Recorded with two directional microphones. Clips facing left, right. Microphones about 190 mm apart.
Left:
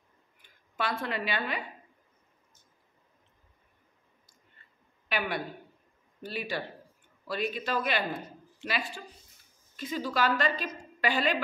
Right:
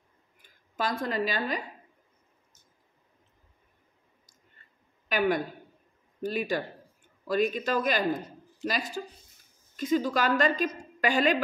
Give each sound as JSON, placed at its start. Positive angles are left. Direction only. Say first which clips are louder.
{"t": 0.4, "sound": "speech", "louder": "right 2 dB", "side_deg": -40}
{"t": 5.0, "sound": "a woman's voice", "louder": "right 6 dB", "side_deg": -45}